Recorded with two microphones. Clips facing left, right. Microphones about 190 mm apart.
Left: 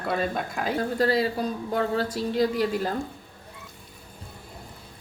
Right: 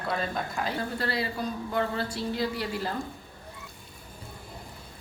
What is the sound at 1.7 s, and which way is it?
Speech, 45° left (ahead or behind).